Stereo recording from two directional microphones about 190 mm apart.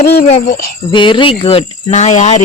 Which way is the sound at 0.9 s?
25° left (ahead or behind).